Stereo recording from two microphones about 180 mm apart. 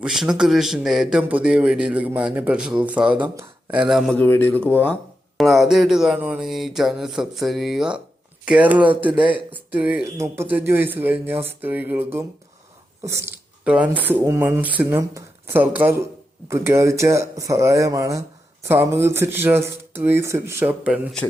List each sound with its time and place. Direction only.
0.0 s speech: 5° right (ahead or behind)
4.2 s speech: 10° left (ahead or behind)
5.4 s speech: centre (ahead or behind)